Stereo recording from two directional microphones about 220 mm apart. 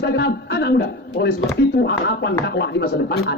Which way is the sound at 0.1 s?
50° left (ahead or behind).